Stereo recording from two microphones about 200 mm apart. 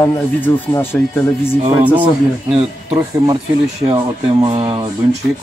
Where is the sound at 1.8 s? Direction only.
10° right (ahead or behind).